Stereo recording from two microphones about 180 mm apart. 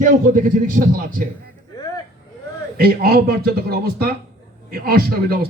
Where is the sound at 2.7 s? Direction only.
60° right (ahead or behind).